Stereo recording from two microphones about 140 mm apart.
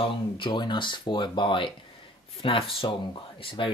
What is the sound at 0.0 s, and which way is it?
Speech, 35° left (ahead or behind).